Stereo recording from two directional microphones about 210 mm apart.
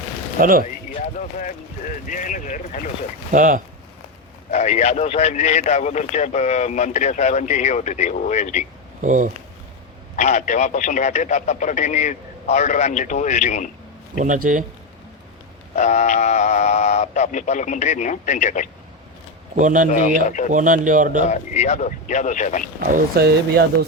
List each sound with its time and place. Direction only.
0.3 s speech: 40° right (ahead or behind)
2.0 s a man's voice: 40° left (ahead or behind)
3.3 s a man's voice: 40° right (ahead or behind)
4.5 s a man's voice: 35° left (ahead or behind)
9.0 s speech: 35° right (ahead or behind)
10.2 s a man's voice: 35° left (ahead or behind)
14.2 s a man's voice: 40° right (ahead or behind)
15.7 s a man's voice: 35° left (ahead or behind)
19.5 s a man's voice: 35° right (ahead or behind)
20.2 s a man's voice: 35° left (ahead or behind)
20.5 s a man's voice: 40° right (ahead or behind)
21.2 s a man's voice: 35° left (ahead or behind)
22.9 s speech: 45° right (ahead or behind)